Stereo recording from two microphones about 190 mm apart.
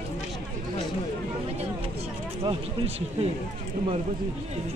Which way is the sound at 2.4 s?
30° right (ahead or behind).